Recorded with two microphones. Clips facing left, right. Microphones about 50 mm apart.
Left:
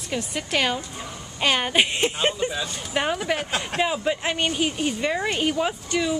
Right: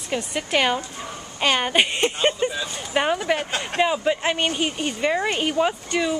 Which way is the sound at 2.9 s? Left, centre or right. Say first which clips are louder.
Right 3 dB; centre.